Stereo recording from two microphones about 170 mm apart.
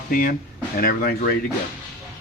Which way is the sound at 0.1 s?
55° left (ahead or behind).